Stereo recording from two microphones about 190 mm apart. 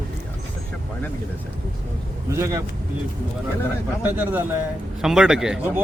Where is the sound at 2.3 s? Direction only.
15° right (ahead or behind).